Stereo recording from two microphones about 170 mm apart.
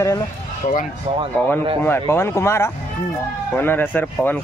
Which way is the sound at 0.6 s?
40° left (ahead or behind).